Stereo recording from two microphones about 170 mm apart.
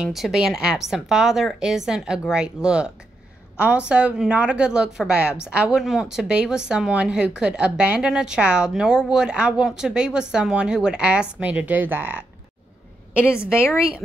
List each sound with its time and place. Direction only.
0.0 s a woman's voice: centre (ahead or behind)
13.2 s a woman's voice: 15° left (ahead or behind)